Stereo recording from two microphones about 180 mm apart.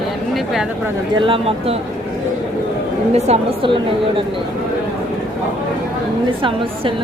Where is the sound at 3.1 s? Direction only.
35° right (ahead or behind).